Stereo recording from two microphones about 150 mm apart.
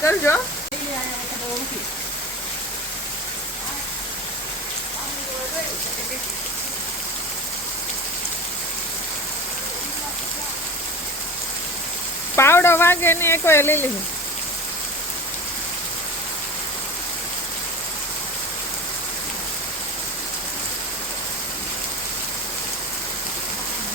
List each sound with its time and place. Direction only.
0.0 s sizzle: 15° left (ahead or behind)
12.4 s sizzle: 15° left (ahead or behind)